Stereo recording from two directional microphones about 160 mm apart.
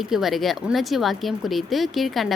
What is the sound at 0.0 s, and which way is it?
Speech, centre (ahead or behind).